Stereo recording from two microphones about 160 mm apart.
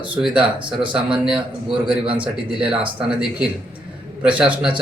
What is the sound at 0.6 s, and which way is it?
Speech, 30° right (ahead or behind).